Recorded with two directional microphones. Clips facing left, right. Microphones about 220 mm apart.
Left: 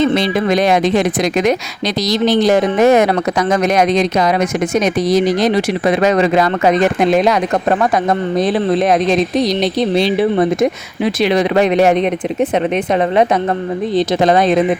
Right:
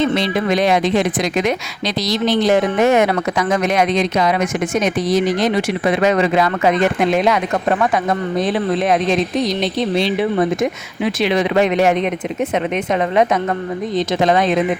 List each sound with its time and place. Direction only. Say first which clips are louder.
0.2 s speech: left 3 dB; 45° left (ahead or behind)
8.4 s speech: left 4 dB; 35° left (ahead or behind)
10.0 s speech: left 3 dB; 35° left (ahead or behind)